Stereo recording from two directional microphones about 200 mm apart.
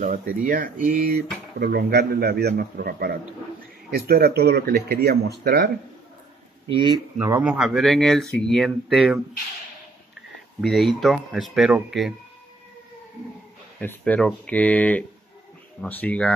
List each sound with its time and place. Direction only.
0.0 s a man's voice: 45° right (ahead or behind)
6.7 s speech: 20° right (ahead or behind)
7.2 s speech: 10° right (ahead or behind)
10.6 s speech: centre (ahead or behind)
13.7 s speech: 10° left (ahead or behind)